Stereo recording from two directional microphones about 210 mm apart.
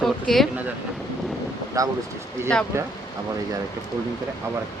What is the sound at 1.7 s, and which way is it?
Speech, 15° right (ahead or behind).